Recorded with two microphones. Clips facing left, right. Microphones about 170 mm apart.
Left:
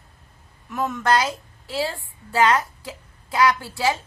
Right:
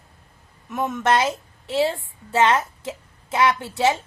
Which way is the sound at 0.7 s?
20° right (ahead or behind).